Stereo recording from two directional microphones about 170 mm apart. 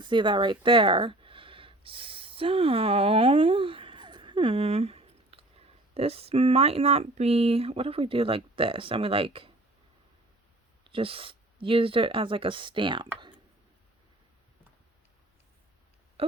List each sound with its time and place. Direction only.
0.0 s a sound: 25° right (ahead or behind)
5.9 s speech: 35° right (ahead or behind)
10.8 s speech: 30° right (ahead or behind)